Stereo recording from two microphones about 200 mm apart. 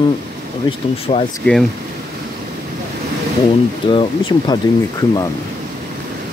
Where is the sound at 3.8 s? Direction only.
25° left (ahead or behind).